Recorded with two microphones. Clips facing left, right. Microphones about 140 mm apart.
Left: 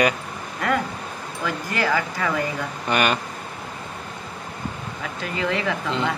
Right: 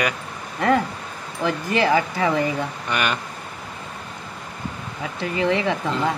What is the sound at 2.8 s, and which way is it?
Speech, 35° left (ahead or behind).